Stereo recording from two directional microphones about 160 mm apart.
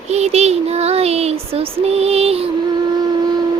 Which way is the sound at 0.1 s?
45° right (ahead or behind).